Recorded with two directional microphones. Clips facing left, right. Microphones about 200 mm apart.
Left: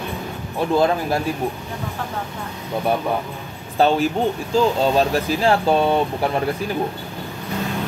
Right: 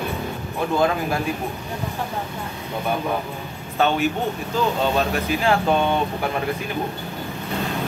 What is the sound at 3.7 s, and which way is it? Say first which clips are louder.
Speech: left 3 dB; 35° left (ahead or behind).